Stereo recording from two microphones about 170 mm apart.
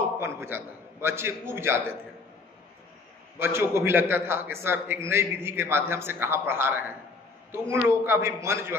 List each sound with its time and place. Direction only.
0.2 s a man's voice: 15° right (ahead or behind)
3.3 s a man's voice: 15° right (ahead or behind)